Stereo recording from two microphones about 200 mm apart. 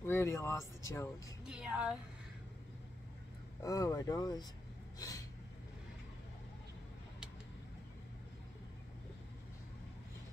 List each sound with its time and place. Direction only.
0.0 s speech: 15° left (ahead or behind)
1.4 s a woman's voice: 5° right (ahead or behind)
3.6 s speech: 15° left (ahead or behind)
4.9 s a sound: 15° left (ahead or behind)